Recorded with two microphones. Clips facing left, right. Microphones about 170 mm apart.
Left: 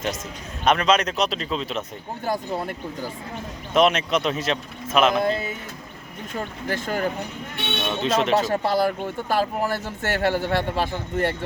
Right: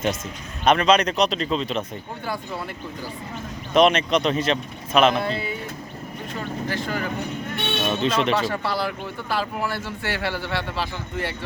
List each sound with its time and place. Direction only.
0.6 s speech: centre (ahead or behind)
2.2 s speech: 45° left (ahead or behind)
3.8 s speech: centre (ahead or behind)
5.2 s speech: 45° left (ahead or behind)
6.7 s speech: 45° left (ahead or behind)
7.8 s music: 5° right (ahead or behind)
8.3 s speech: 40° left (ahead or behind)